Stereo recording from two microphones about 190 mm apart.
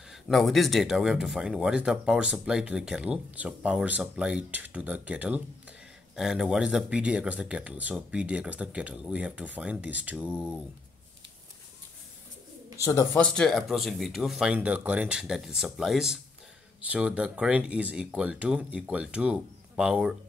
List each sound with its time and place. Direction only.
0.1 s speech: centre (ahead or behind)
12.8 s speech: 15° left (ahead or behind)
13.2 s speech: 5° left (ahead or behind)